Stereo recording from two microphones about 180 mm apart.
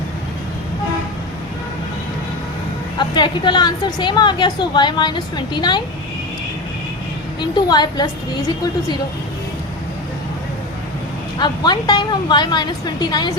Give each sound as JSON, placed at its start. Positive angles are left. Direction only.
{"t": 3.0, "sound": "a woman's voice", "side_deg": 25}
{"t": 7.5, "sound": "a woman's voice", "side_deg": 25}
{"t": 11.3, "sound": "a woman's voice", "side_deg": 25}